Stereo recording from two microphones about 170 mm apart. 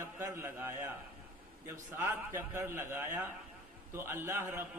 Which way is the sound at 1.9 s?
15° right (ahead or behind).